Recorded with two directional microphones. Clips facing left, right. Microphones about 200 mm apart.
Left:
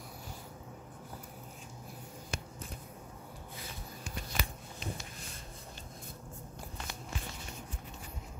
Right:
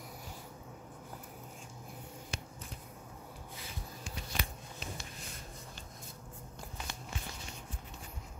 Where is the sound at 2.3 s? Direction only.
55° left (ahead or behind).